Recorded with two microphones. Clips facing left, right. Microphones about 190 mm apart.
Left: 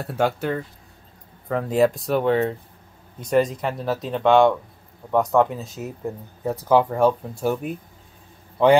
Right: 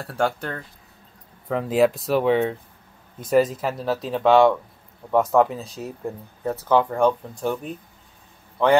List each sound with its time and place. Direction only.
0.2 s speech: 5° left (ahead or behind)
6.4 s speech: 10° left (ahead or behind)